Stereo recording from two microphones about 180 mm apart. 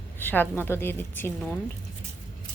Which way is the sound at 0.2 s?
10° left (ahead or behind).